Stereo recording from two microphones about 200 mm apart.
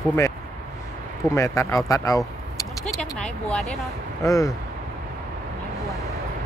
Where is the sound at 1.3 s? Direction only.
15° left (ahead or behind).